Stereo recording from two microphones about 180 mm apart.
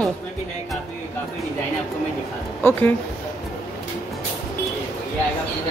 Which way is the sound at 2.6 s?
10° left (ahead or behind).